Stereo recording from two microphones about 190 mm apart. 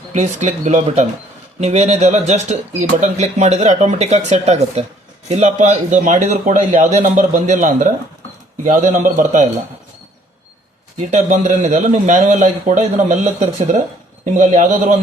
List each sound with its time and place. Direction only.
0.1 s speech: 40° right (ahead or behind)
11.1 s speech: 40° right (ahead or behind)